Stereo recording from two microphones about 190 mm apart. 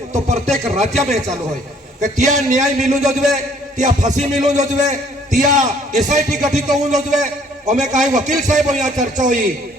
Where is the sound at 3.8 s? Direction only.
40° right (ahead or behind).